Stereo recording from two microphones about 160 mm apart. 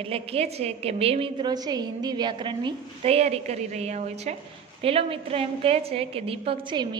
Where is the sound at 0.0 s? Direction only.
35° right (ahead or behind).